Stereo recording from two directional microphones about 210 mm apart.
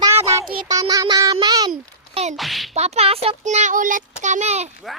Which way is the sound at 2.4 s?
Centre (ahead or behind).